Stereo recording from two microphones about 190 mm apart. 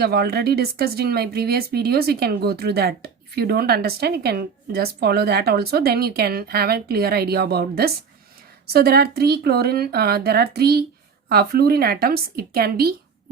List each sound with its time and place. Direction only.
0.0 s a woman's voice: 55° right (ahead or behind)